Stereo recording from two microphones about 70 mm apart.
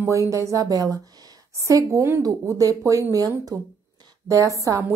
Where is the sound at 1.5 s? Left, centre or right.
Right.